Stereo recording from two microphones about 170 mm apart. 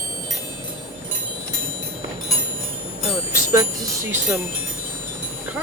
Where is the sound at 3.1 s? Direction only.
15° right (ahead or behind).